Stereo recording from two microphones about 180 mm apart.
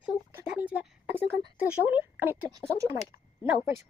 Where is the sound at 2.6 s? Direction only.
Centre (ahead or behind).